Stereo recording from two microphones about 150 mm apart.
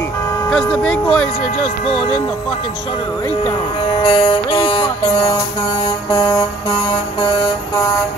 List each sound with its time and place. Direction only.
0.5 s speech: 5° left (ahead or behind)
1.9 s speech: 35° left (ahead or behind)
4.0 s music: 30° left (ahead or behind)